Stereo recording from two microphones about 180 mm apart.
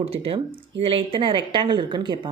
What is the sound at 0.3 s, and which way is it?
Speech, 30° right (ahead or behind).